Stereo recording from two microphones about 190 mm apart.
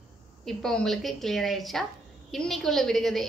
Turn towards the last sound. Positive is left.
turn(degrees=0)  # may be behind; listen again after turning